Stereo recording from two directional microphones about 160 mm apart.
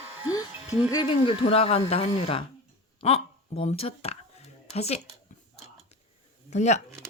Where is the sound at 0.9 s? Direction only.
35° left (ahead or behind).